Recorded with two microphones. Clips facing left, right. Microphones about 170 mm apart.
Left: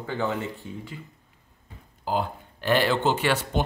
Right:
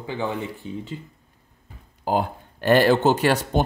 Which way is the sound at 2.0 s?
50° right (ahead or behind).